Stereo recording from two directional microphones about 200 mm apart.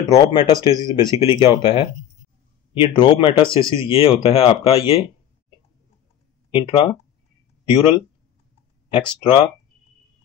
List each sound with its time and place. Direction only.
0.1 s speech: 20° left (ahead or behind)
3.0 s speech: 25° left (ahead or behind)
6.5 s speech: 25° left (ahead or behind)
9.2 s speech: 25° left (ahead or behind)